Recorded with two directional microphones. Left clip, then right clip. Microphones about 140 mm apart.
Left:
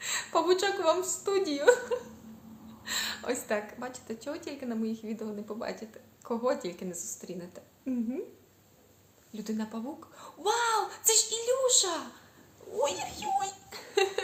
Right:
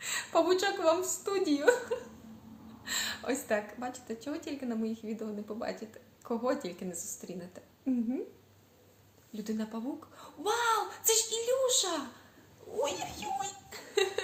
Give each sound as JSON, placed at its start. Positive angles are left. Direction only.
{"t": 0.0, "sound": "a woman's voice", "side_deg": 20}
{"t": 9.3, "sound": "a child's voice", "side_deg": 20}